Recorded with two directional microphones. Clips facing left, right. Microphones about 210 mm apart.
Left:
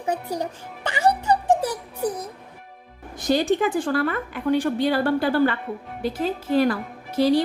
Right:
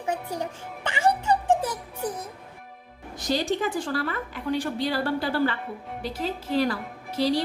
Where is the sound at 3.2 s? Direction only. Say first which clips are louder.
Left 5 dB; 55° left (ahead or behind).